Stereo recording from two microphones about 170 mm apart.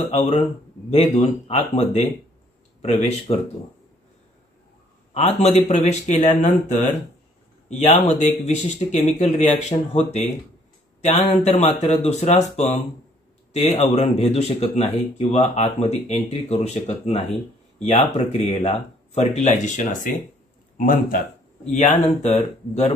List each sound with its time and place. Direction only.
0.1 s speech: 35° left (ahead or behind)
5.1 s a man's voice: 40° left (ahead or behind)